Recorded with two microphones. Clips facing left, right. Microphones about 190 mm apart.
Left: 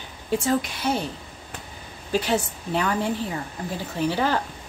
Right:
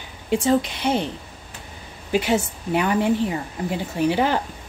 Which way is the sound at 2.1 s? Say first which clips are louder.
Right 3 dB; 10° right (ahead or behind).